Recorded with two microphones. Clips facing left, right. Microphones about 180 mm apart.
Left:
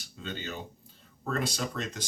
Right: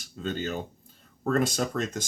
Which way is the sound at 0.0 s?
45° right (ahead or behind).